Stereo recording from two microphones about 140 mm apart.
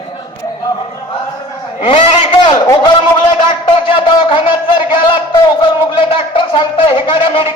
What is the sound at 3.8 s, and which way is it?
A man's voice, 40° left (ahead or behind).